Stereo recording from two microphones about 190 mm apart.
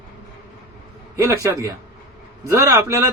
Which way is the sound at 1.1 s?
15° right (ahead or behind).